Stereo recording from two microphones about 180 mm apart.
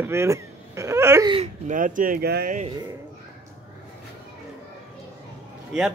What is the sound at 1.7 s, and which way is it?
Speech, 45° right (ahead or behind).